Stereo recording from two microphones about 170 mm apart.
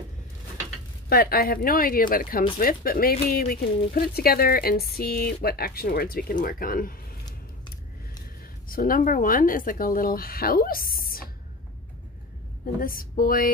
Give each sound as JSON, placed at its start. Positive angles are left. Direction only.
{"t": 1.0, "sound": "speech", "side_deg": 65}
{"t": 8.6, "sound": "speech", "side_deg": 55}
{"t": 12.8, "sound": "speech", "side_deg": 55}